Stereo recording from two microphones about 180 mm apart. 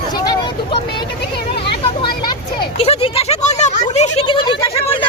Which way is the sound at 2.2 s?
30° left (ahead or behind).